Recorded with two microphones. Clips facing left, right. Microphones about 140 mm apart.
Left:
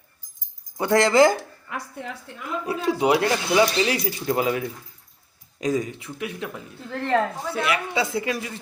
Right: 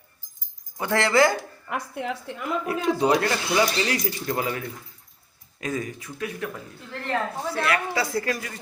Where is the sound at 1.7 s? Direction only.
90° right.